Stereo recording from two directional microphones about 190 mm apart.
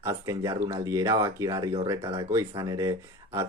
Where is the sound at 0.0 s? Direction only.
15° right (ahead or behind).